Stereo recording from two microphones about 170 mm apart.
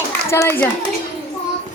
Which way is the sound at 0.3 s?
15° left (ahead or behind).